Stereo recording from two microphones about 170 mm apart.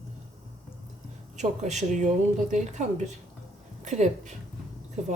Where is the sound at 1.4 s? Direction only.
45° right (ahead or behind).